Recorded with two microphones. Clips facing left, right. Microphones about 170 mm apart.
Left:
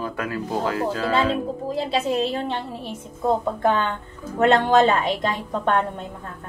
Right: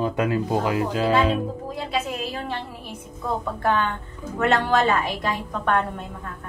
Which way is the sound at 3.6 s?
20° left (ahead or behind).